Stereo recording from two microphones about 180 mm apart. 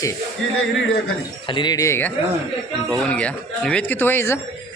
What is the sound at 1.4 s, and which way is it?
Speech, 25° left (ahead or behind).